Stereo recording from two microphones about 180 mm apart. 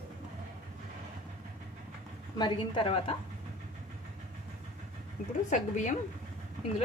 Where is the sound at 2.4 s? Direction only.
25° left (ahead or behind).